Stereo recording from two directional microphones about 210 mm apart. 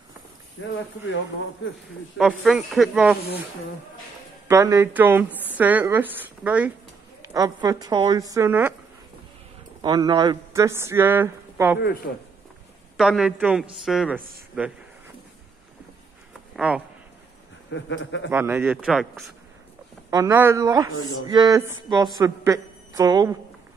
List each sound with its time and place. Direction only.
0.6 s speech: 65° left (ahead or behind)
2.1 s speech: centre (ahead or behind)
4.5 s a woman's voice: 15° right (ahead or behind)
7.3 s a woman's voice: 15° right (ahead or behind)
9.8 s speech: 20° right (ahead or behind)
12.1 s speech: 55° left (ahead or behind)
12.9 s a woman's voice: centre (ahead or behind)
16.5 s speech: 5° right (ahead or behind)
17.6 s speech: 60° left (ahead or behind)
18.3 s a woman's voice: 10° right (ahead or behind)
20.1 s a woman's voice: 15° right (ahead or behind)